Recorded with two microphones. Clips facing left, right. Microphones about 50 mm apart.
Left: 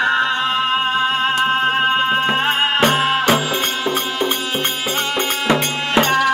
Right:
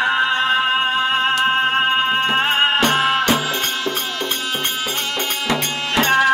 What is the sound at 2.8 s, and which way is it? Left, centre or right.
Music, centre.